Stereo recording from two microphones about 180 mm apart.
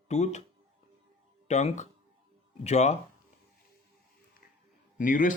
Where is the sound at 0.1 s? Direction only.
40° left (ahead or behind).